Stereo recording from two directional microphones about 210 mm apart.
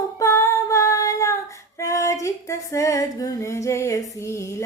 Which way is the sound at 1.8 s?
15° left (ahead or behind).